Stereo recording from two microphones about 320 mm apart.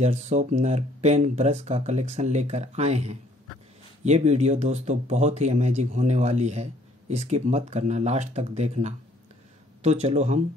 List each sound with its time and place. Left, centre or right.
0.0 s speech: right